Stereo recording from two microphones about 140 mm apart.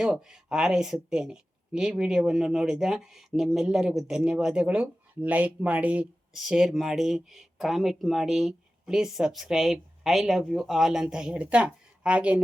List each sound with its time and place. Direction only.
0.0 s speech: 5° right (ahead or behind)